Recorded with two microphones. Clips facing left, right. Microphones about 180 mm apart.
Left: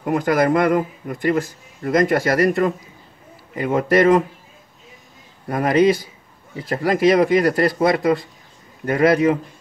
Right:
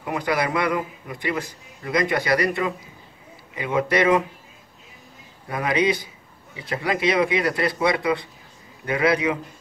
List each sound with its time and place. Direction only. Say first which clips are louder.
0.0 s speech: left 6 dB; 50° left (ahead or behind)
5.5 s speech: left 6 dB; 45° left (ahead or behind)